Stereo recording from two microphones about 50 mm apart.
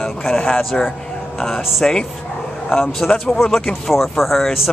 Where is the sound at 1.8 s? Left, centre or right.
Centre.